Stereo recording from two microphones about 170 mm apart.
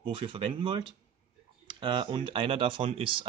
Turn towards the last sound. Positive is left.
turn(degrees=-30)  # may be behind; listen again after turning